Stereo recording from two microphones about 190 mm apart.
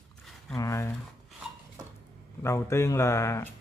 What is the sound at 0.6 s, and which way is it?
Speech, 15° left (ahead or behind).